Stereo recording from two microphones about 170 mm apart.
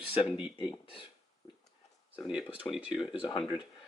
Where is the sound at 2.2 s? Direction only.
5° right (ahead or behind).